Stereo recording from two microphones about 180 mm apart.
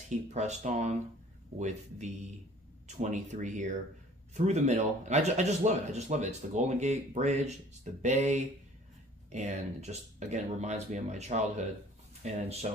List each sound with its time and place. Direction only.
0.3 s speech: 40° right (ahead or behind)